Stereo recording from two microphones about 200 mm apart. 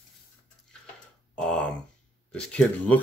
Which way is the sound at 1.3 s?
5° left (ahead or behind).